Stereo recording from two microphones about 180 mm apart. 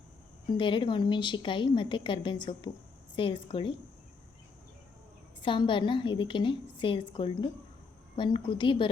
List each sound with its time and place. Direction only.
0.5 s a woman's voice: 30° left (ahead or behind)
5.4 s a woman's voice: 25° left (ahead or behind)